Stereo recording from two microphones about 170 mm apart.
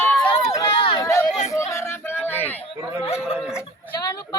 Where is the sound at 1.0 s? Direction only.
15° left (ahead or behind).